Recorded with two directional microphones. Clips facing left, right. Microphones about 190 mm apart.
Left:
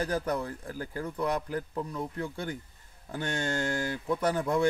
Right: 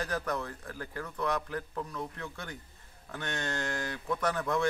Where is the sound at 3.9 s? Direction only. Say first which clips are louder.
Left 2 dB; 30° left (ahead or behind).